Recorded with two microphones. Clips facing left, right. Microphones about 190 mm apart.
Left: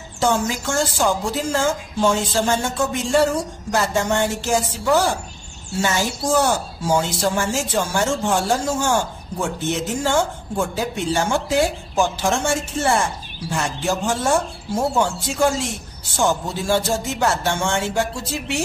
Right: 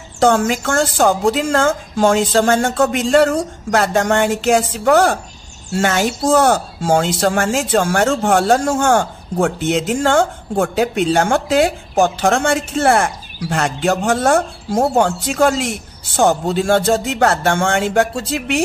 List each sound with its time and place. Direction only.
0.2 s speech: 65° right (ahead or behind)